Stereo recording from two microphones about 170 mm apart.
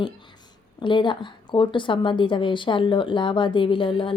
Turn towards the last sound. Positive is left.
turn(degrees=30)  # may be behind; listen again after turning